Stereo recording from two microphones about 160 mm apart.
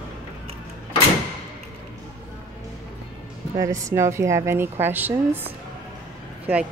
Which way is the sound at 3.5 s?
20° right (ahead or behind).